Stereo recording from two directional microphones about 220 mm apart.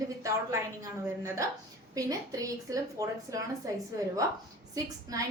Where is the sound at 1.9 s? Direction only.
15° right (ahead or behind).